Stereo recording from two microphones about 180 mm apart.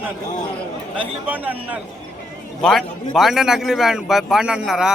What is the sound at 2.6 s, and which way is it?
A man's voice, centre (ahead or behind).